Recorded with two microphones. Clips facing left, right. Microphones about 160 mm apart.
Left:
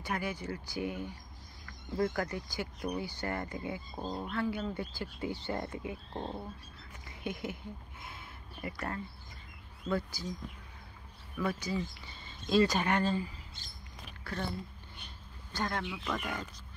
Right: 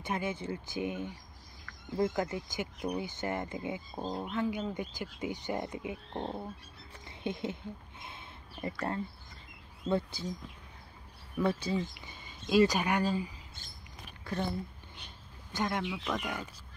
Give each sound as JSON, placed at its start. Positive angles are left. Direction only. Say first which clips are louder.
{"t": 0.0, "sound": "speech", "louder": "right 2 dB", "side_deg": -20}
{"t": 7.1, "sound": "a sound", "louder": "right 3 dB", "side_deg": -25}
{"t": 9.8, "sound": "speech", "louder": "right 3 dB", "side_deg": -25}
{"t": 11.3, "sound": "speech", "louder": "right 3 dB", "side_deg": -25}
{"t": 15.5, "sound": "speech", "louder": "right 3 dB", "side_deg": -20}